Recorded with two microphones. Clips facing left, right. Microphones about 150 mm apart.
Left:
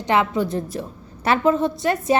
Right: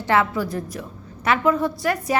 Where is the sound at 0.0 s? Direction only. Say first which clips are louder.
Left 1 dB; 20° left (ahead or behind).